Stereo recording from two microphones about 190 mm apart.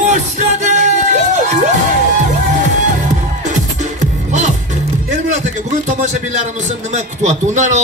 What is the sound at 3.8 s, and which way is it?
Music, 40° right (ahead or behind).